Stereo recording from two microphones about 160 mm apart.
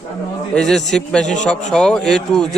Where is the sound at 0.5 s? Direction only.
5° left (ahead or behind).